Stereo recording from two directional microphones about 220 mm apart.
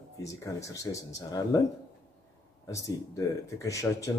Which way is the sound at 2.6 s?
15° left (ahead or behind).